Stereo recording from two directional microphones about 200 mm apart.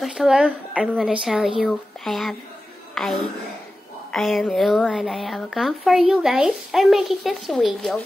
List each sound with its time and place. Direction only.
0.0 s a woman's voice: centre (ahead or behind)